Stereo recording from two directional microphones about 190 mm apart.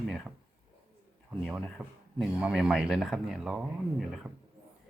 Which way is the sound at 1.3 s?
Centre (ahead or behind).